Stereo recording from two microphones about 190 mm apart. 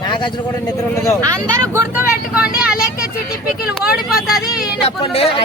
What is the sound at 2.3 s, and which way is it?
Speech, 5° right (ahead or behind).